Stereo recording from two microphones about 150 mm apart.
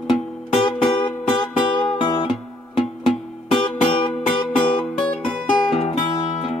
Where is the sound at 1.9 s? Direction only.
30° left (ahead or behind).